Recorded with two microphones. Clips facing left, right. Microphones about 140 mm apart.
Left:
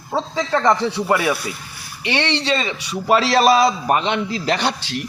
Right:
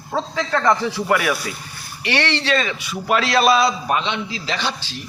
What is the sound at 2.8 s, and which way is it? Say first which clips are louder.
Speech: left 2 dB; centre (ahead or behind).